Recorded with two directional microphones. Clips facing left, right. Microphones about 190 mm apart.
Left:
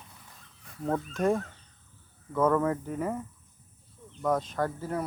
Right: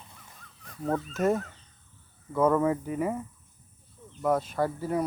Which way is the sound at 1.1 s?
5° right (ahead or behind).